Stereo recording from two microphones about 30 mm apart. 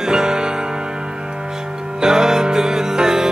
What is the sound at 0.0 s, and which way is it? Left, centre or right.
Music, right.